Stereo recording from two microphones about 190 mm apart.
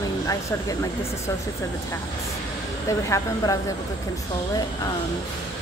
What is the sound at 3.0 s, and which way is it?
Speech, 15° left (ahead or behind).